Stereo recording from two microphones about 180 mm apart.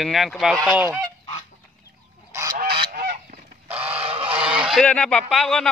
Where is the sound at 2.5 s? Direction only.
50° right (ahead or behind).